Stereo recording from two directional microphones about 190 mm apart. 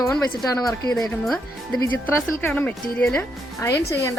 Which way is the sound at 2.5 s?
10° left (ahead or behind).